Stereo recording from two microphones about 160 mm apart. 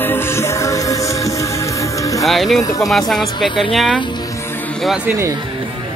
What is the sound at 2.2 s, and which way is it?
Speech, centre (ahead or behind).